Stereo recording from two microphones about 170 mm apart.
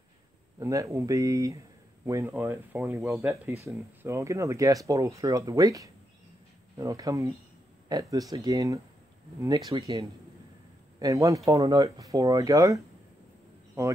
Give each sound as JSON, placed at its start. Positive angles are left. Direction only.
{"t": 0.6, "sound": "speech", "side_deg": -20}